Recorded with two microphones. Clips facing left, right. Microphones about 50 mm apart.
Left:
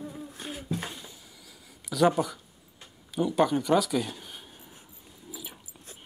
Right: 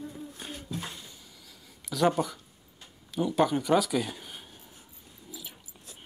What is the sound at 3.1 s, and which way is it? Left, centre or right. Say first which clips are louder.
Speech: left 1 dB; centre.